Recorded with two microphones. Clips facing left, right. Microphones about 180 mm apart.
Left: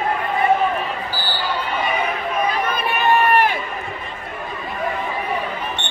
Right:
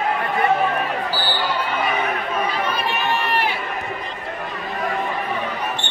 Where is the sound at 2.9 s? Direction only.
55° left (ahead or behind).